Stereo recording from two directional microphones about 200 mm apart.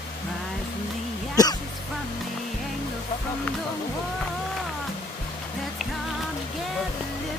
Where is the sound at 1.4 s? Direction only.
20° left (ahead or behind).